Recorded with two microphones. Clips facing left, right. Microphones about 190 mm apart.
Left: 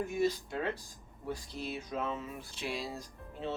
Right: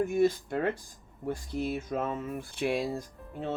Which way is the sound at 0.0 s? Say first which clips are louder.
Right 6 dB; 55° right (ahead or behind).